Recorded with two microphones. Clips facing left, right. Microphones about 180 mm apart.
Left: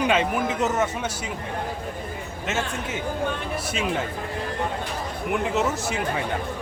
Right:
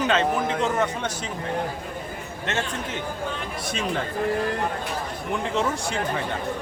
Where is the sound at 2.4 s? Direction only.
5° left (ahead or behind).